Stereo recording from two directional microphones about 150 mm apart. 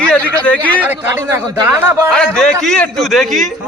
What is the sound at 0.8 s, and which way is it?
Speech, 15° right (ahead or behind).